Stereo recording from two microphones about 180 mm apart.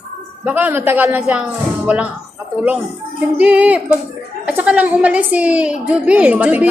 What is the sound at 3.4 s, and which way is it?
A woman's voice, 5° right (ahead or behind).